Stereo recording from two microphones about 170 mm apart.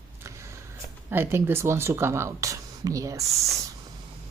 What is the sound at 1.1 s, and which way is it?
Speech, 15° right (ahead or behind).